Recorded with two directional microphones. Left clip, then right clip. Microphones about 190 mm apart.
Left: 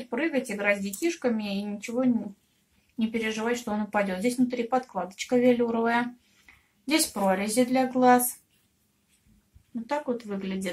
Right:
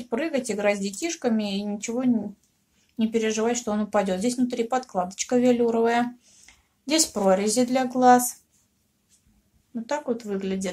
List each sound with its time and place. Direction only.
0.1 s speech: 60° right (ahead or behind)
9.8 s speech: 60° right (ahead or behind)